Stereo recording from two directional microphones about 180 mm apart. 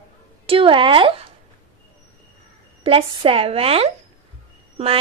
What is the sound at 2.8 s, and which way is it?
Speech, 30° right (ahead or behind).